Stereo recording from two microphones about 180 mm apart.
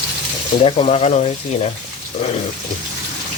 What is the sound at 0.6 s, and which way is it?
Speech, 35° left (ahead or behind).